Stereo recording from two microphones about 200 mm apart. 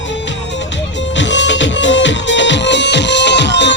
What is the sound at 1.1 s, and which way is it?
Music, 65° left (ahead or behind).